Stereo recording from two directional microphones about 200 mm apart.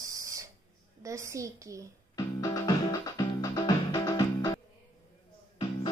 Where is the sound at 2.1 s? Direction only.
15° left (ahead or behind).